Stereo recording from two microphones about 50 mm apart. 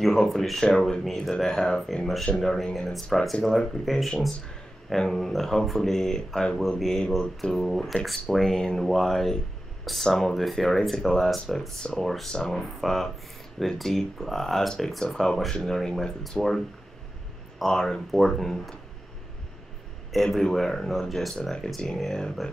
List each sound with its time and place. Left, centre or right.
0.0 s speech: centre
8.5 s speech: centre
10.3 s speech: centre
12.3 s speech: centre
20.1 s speech: centre